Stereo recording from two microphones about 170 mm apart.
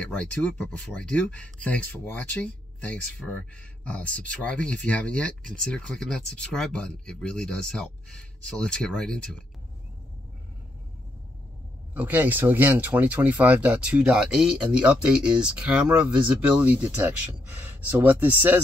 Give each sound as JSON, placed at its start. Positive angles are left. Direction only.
{"t": 0.0, "sound": "speech", "side_deg": 5}
{"t": 11.9, "sound": "speech", "side_deg": -10}